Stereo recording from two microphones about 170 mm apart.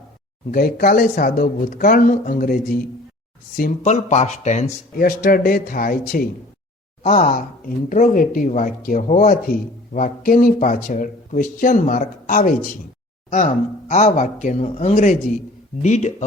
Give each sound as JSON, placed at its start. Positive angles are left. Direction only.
{"t": 0.5, "sound": "speech", "side_deg": 55}
{"t": 3.8, "sound": "speech", "side_deg": 40}
{"t": 4.9, "sound": "speech", "side_deg": 60}